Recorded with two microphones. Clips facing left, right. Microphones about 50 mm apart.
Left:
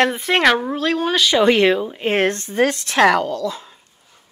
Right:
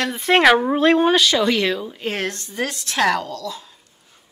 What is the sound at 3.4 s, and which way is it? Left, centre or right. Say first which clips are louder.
Speech: left 5 dB; left.